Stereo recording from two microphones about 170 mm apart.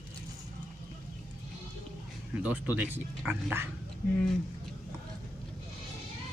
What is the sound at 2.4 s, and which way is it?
Speech, 10° right (ahead or behind).